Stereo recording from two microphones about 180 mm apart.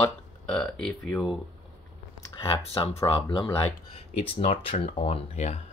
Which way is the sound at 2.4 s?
30° left (ahead or behind).